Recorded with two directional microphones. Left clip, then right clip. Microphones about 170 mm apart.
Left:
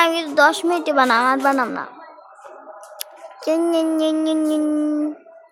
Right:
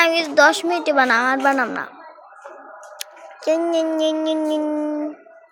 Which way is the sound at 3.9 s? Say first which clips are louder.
Even; 5° left (ahead or behind).